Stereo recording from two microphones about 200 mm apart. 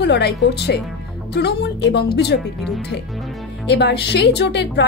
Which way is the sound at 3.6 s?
55° left (ahead or behind).